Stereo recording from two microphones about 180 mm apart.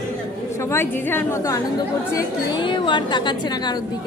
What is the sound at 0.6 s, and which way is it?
A woman's voice, 15° left (ahead or behind).